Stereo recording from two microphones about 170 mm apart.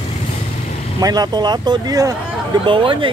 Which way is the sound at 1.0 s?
25° right (ahead or behind).